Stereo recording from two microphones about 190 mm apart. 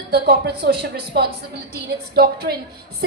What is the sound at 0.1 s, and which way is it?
A woman's voice, 55° right (ahead or behind).